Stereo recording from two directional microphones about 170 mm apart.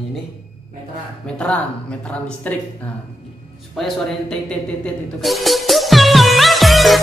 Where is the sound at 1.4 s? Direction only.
5° left (ahead or behind).